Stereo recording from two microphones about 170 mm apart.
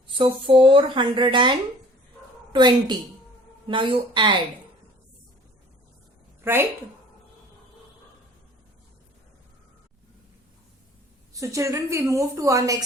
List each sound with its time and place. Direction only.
0.2 s a woman's voice: 30° right (ahead or behind)
6.4 s a woman's voice: 15° right (ahead or behind)
11.3 s a woman's voice: 20° right (ahead or behind)